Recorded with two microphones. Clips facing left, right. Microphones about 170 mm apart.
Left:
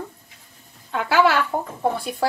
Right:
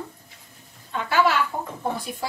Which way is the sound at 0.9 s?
65° left (ahead or behind).